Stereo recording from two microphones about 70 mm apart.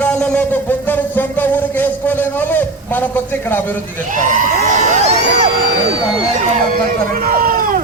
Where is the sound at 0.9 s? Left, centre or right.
Left.